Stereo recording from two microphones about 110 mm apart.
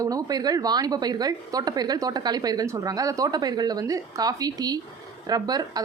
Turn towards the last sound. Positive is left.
turn(degrees=-35)  # may be behind; listen again after turning